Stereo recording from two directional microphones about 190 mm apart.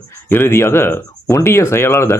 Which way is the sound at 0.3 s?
10° left (ahead or behind).